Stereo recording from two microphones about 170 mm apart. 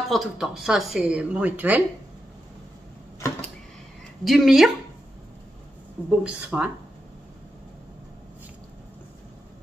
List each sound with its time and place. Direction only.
0.1 s speech: centre (ahead or behind)
3.2 s a sound: 15° left (ahead or behind)
4.2 s speech: centre (ahead or behind)
6.0 s speech: 5° right (ahead or behind)